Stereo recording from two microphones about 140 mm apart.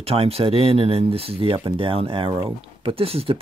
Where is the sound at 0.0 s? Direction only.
45° right (ahead or behind).